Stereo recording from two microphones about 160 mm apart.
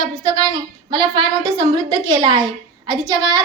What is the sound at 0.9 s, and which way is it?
Child singing, 30° right (ahead or behind).